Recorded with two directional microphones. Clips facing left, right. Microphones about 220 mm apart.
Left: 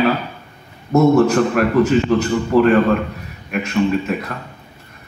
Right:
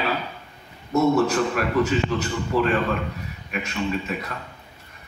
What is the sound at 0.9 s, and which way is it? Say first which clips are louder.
A man's voice: left 7 dB; 50° left (ahead or behind).